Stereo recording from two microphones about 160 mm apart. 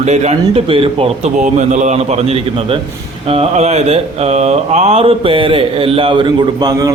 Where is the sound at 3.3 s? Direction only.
40° right (ahead or behind).